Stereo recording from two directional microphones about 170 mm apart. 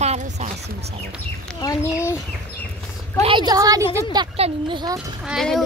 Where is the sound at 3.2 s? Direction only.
25° right (ahead or behind).